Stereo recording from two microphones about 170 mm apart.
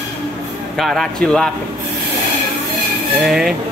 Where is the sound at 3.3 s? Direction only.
Centre (ahead or behind).